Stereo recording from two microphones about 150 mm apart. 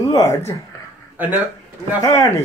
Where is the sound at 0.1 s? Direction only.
20° left (ahead or behind).